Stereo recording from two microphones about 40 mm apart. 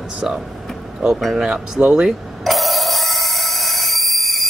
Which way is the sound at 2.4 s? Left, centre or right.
Centre.